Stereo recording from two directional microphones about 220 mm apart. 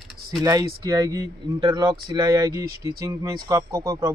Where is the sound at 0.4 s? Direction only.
15° right (ahead or behind).